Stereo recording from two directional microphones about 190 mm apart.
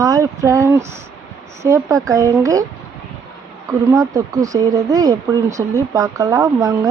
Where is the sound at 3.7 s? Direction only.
15° right (ahead or behind).